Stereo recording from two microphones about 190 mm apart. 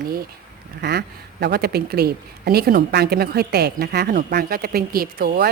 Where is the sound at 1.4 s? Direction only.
60° right (ahead or behind).